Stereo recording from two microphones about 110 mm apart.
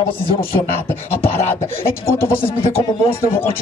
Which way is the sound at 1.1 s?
20° left (ahead or behind).